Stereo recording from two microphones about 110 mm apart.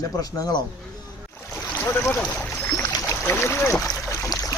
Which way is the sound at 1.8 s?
20° left (ahead or behind).